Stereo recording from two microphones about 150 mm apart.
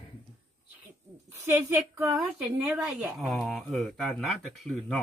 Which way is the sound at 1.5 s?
15° right (ahead or behind).